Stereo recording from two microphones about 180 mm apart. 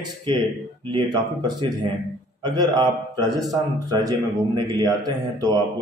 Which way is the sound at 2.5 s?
25° right (ahead or behind).